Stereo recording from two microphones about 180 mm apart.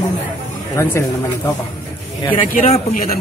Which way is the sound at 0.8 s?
15° left (ahead or behind).